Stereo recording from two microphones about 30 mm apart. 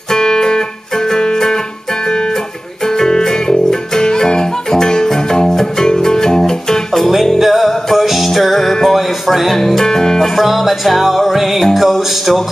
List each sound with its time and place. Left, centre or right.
0.1 s music: left
3.0 s music: centre
7.3 s music: centre
8.8 s a sound: centre
9.5 s music: centre
10.4 s music: centre